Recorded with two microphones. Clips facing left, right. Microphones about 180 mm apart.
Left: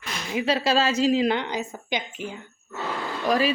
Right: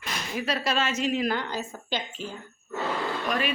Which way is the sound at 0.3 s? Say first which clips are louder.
Left 6 dB; 25° left (ahead or behind).